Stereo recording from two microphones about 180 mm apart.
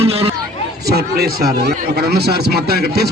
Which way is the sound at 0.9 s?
60° right (ahead or behind).